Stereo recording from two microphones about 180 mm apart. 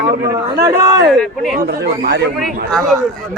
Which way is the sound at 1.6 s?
60° right (ahead or behind).